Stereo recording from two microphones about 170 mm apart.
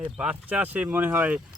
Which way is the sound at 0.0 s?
5° right (ahead or behind).